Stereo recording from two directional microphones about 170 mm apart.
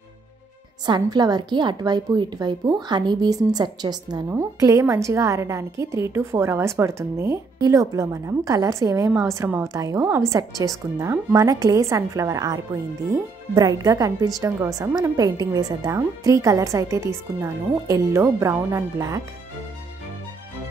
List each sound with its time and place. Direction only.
0.8 s a woman's voice: 25° right (ahead or behind)